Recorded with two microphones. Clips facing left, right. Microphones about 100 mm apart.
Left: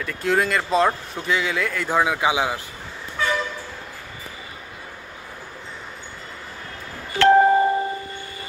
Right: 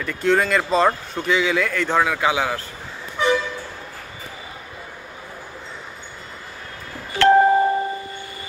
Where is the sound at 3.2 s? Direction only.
20° right (ahead or behind).